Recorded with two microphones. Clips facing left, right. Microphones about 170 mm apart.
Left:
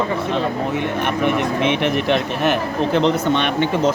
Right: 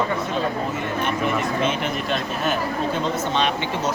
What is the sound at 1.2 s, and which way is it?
Speech, 70° left (ahead or behind).